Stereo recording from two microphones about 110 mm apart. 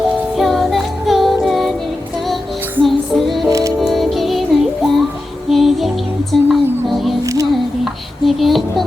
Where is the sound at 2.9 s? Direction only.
Centre (ahead or behind).